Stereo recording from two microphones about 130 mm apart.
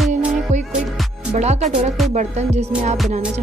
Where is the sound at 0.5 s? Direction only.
65° right (ahead or behind).